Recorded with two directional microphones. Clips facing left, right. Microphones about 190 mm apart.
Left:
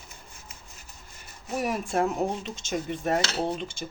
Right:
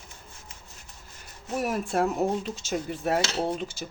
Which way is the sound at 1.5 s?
Centre (ahead or behind).